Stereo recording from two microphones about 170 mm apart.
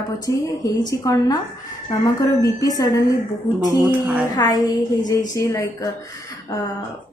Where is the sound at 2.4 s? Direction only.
20° left (ahead or behind).